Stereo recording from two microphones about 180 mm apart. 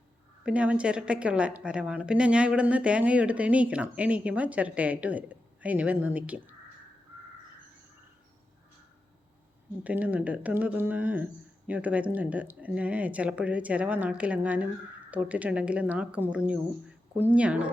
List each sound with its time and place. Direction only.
0.4 s a woman's voice: 5° right (ahead or behind)
9.8 s a woman's voice: 10° right (ahead or behind)